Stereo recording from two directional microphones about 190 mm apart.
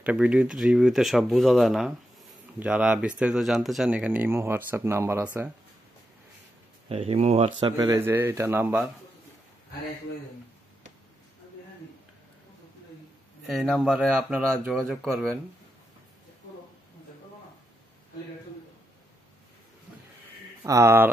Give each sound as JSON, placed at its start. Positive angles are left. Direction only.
{"t": 0.0, "sound": "speech", "side_deg": -5}
{"t": 6.9, "sound": "speech", "side_deg": -30}
{"t": 7.7, "sound": "speech", "side_deg": -20}
{"t": 13.5, "sound": "speech", "side_deg": 0}
{"t": 20.6, "sound": "speech", "side_deg": -15}